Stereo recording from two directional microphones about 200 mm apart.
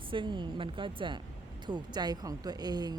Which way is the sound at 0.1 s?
25° right (ahead or behind).